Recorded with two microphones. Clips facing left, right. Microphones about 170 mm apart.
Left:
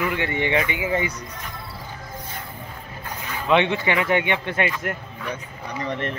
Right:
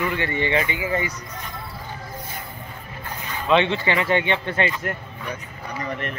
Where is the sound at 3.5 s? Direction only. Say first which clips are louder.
Even; 15° left (ahead or behind).